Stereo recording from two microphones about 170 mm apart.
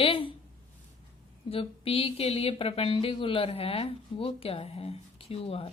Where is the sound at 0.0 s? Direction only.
30° left (ahead or behind).